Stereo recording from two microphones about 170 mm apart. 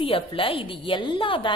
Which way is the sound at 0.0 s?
30° left (ahead or behind).